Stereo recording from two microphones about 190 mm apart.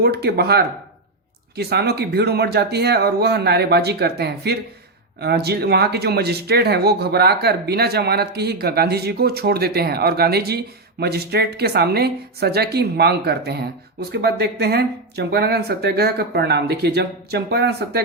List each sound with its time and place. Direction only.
0.0 s speech: 55° right (ahead or behind)